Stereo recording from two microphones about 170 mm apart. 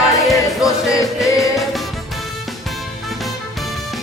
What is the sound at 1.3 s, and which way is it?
Music, 20° left (ahead or behind).